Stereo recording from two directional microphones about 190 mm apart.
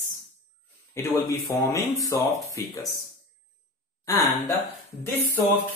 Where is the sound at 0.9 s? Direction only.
15° left (ahead or behind).